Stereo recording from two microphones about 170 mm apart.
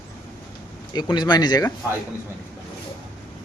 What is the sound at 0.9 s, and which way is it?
Speech, 25° left (ahead or behind).